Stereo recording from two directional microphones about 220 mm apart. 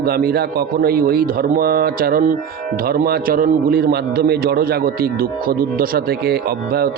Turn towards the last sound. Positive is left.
turn(degrees=-45)  # may be behind; listen again after turning